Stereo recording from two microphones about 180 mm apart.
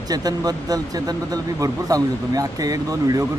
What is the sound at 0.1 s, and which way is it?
Speech, 20° right (ahead or behind).